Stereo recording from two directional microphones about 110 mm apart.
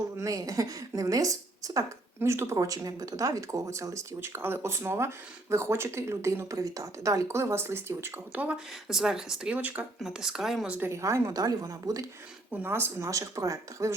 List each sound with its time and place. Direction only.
0.2 s a woman's voice: 30° right (ahead or behind)
8.9 s speech: 5° right (ahead or behind)
10.8 s a woman's voice: 25° right (ahead or behind)
12.5 s a woman's voice: 20° right (ahead or behind)